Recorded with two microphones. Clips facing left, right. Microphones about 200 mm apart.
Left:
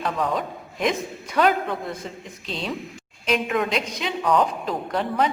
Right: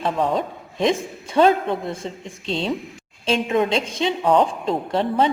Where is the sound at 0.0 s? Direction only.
25° right (ahead or behind).